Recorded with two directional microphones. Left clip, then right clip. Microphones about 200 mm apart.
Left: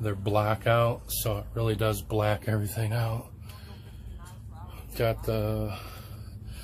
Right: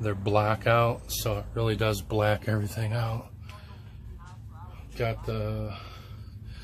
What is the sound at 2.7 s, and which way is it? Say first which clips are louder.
Speech: even; 15° left (ahead or behind).